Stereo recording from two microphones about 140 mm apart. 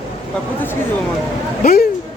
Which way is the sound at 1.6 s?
75° left (ahead or behind).